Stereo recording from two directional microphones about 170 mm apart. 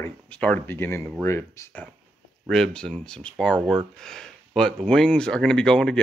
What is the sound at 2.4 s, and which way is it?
Speech, centre (ahead or behind).